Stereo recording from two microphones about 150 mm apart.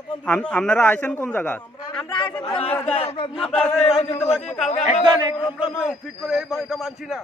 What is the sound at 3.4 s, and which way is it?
Speech, 10° left (ahead or behind).